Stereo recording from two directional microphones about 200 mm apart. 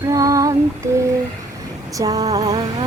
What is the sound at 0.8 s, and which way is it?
Speech, 15° right (ahead or behind).